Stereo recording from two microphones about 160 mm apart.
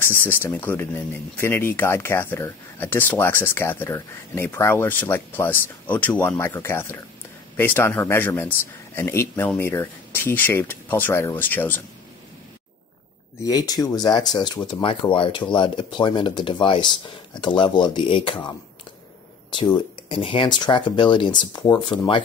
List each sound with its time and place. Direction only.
0.0 s speech: 15° left (ahead or behind)
13.4 s speech: 25° left (ahead or behind)
19.5 s speech: 30° left (ahead or behind)